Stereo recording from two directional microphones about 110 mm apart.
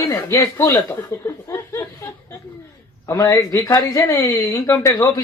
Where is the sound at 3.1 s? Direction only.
30° left (ahead or behind).